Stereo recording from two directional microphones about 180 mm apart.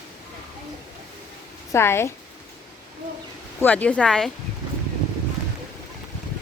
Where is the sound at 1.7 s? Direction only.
15° left (ahead or behind).